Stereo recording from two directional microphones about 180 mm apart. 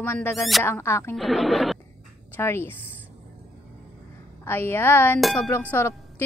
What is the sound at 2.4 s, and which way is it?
Speech, 15° left (ahead or behind).